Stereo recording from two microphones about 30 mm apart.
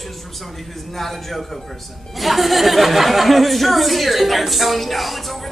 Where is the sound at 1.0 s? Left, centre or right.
Centre.